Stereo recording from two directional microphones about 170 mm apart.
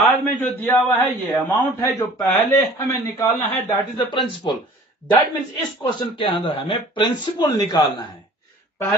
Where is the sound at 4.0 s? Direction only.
25° left (ahead or behind).